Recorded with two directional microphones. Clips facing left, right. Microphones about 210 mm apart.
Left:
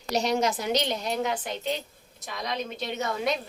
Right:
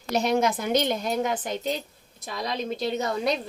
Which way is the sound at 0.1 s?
55° right (ahead or behind).